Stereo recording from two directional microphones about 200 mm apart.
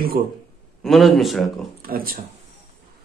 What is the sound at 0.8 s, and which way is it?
Speech, centre (ahead or behind).